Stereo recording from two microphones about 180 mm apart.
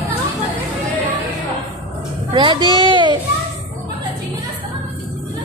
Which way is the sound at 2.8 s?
25° right (ahead or behind).